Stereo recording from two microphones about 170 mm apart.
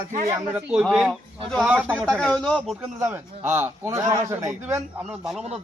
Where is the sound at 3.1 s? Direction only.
10° right (ahead or behind).